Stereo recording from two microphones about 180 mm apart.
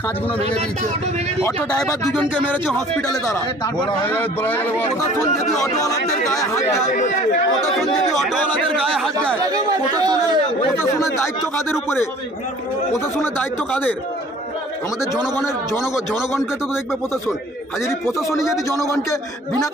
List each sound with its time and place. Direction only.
2.1 s speech: 10° left (ahead or behind)
4.0 s speech: 10° left (ahead or behind)
6.9 s speech: 45° left (ahead or behind)
8.2 s speech: 5° left (ahead or behind)
9.5 s speech: 20° right (ahead or behind)
10.8 s speech: 15° left (ahead or behind)
12.9 s speech: 10° left (ahead or behind)
15.8 s speech: centre (ahead or behind)
18.0 s speech: centre (ahead or behind)